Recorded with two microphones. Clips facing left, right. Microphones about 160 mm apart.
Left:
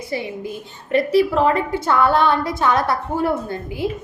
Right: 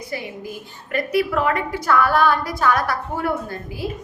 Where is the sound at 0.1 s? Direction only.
25° left (ahead or behind).